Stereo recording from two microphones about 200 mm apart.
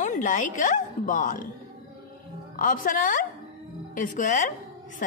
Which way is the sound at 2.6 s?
40° left (ahead or behind).